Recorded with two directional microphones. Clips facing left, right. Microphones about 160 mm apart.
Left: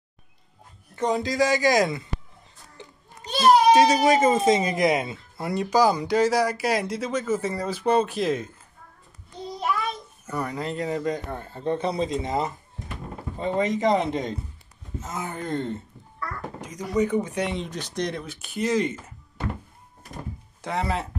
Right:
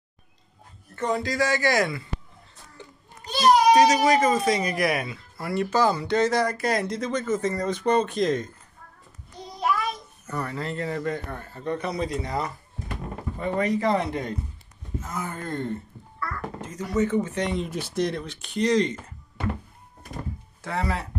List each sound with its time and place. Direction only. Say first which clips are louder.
0.9 s speech: left 2 dB; 20° left (ahead or behind)
3.3 s speech: left 1 dB; 30° left (ahead or behind); by 8.5 s 5° left (ahead or behind)
10.3 s speech: left 1 dB; 15° left (ahead or behind)
17.5 s speech: right 2 dB; 5° right (ahead or behind)
20.6 s speech: left 1 dB; 20° left (ahead or behind)